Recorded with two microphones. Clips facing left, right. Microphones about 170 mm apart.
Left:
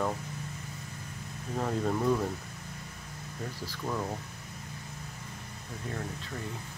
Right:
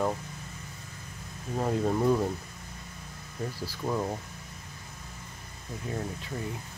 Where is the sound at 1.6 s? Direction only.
15° right (ahead or behind).